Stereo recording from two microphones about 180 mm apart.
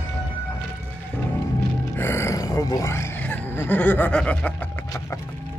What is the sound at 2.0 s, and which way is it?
Roar, 15° left (ahead or behind).